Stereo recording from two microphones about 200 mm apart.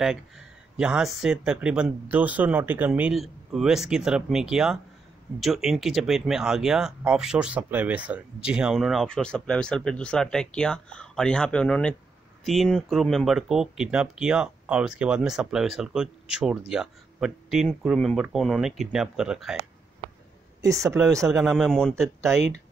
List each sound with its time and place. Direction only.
0.7 s speech: 5° right (ahead or behind)
20.6 s speech: 15° right (ahead or behind)
21.4 s speech: centre (ahead or behind)